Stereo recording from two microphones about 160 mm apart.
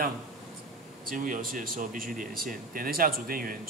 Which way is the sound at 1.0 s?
55° right (ahead or behind).